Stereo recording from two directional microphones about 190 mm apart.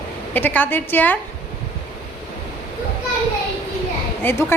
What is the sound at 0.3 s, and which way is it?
Speech, 10° left (ahead or behind).